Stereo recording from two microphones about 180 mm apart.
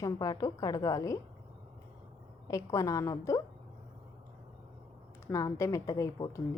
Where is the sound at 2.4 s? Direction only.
15° left (ahead or behind).